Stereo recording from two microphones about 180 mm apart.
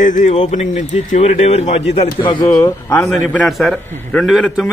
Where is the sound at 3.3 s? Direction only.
5° left (ahead or behind).